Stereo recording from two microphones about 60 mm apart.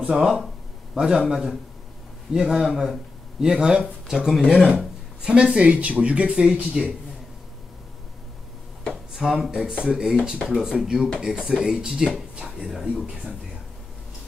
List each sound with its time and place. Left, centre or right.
0.1 s speech: centre
9.1 s speech: centre